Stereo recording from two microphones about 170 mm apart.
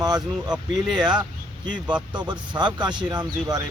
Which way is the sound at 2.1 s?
25° right (ahead or behind).